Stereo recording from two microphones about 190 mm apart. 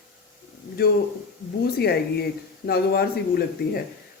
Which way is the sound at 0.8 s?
55° left (ahead or behind).